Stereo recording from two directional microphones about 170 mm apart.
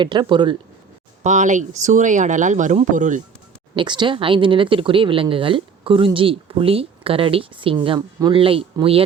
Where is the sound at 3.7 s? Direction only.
25° right (ahead or behind).